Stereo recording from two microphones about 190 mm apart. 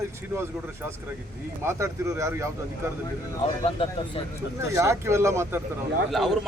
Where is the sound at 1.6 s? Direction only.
15° right (ahead or behind).